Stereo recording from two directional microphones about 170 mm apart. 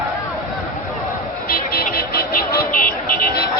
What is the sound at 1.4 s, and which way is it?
Vehicle, 60° left (ahead or behind).